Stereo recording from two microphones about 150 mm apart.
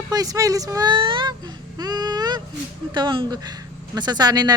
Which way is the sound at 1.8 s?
25° right (ahead or behind).